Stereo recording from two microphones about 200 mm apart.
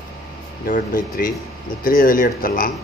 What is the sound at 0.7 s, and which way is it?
Speech, 45° left (ahead or behind).